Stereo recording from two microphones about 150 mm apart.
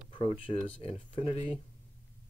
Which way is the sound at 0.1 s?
35° left (ahead or behind).